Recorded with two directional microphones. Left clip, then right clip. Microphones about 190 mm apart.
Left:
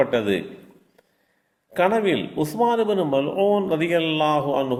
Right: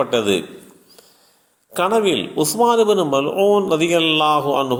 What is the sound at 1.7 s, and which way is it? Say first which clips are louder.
A man's voice: right 3 dB; 15° right (ahead or behind).